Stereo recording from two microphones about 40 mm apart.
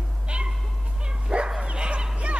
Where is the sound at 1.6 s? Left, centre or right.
Right.